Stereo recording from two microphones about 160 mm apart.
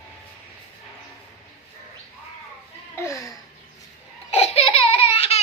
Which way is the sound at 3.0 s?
20° left (ahead or behind).